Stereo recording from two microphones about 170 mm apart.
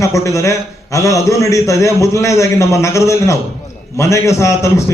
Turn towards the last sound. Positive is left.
turn(degrees=15)  # may be behind; listen again after turning